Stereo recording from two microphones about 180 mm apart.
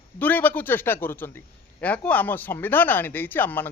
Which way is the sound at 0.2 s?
10° left (ahead or behind).